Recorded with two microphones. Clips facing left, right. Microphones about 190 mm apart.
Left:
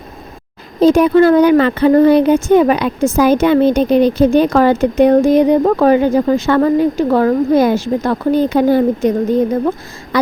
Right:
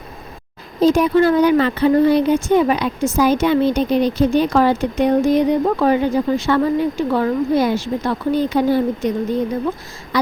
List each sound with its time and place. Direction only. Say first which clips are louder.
0.8 s a woman's voice: left 5 dB; 60° left (ahead or behind)